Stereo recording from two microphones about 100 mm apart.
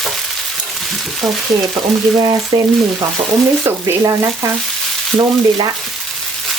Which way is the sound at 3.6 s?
30° right (ahead or behind).